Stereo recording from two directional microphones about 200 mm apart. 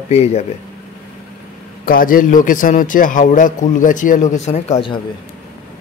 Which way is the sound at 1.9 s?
45° left (ahead or behind).